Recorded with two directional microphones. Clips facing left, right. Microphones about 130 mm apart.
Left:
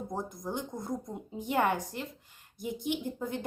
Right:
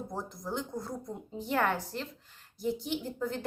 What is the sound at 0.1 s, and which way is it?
Speech, 20° left (ahead or behind).